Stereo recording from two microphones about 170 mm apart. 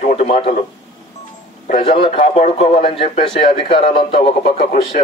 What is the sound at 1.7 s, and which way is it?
Speech, 35° left (ahead or behind).